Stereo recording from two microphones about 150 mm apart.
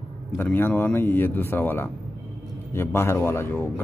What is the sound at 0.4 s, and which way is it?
A man's voice, 15° left (ahead or behind).